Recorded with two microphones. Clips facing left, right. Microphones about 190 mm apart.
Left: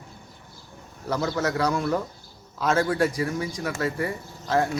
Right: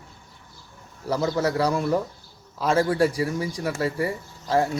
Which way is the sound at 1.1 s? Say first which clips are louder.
Right 2 dB; 30° right (ahead or behind).